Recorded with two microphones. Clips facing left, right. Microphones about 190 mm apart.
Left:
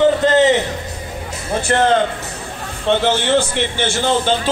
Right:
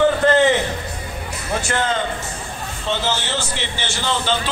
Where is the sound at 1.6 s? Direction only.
60° left (ahead or behind).